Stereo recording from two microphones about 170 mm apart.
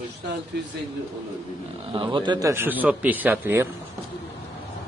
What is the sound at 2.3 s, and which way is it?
A man's voice, 20° right (ahead or behind).